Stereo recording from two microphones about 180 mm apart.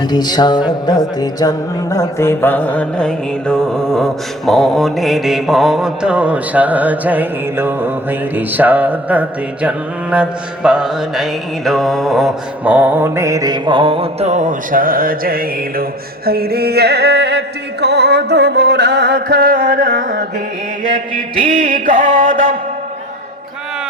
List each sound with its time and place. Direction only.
0.0 s music: 25° left (ahead or behind); by 7.9 s 10° right (ahead or behind)
8.4 s mantra: 10° right (ahead or behind); by 20.2 s 45° right (ahead or behind)
21.7 s mantra: 45° right (ahead or behind)